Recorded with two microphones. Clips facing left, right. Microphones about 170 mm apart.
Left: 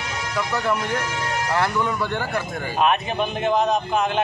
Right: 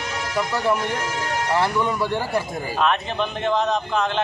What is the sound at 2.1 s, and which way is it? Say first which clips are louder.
Speech: right 2 dB; 30° right (ahead or behind).